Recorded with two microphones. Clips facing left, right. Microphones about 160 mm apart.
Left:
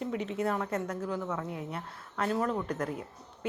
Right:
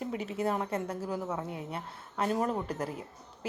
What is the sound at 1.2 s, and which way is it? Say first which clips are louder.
Speech: even; 30° right (ahead or behind).